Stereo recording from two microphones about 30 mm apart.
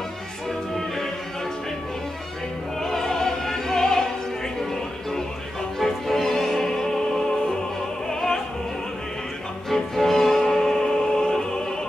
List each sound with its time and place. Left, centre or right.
2.8 s opera: centre
5.8 s music: centre
8.1 s opera: centre
9.7 s music: centre
10.8 s music: left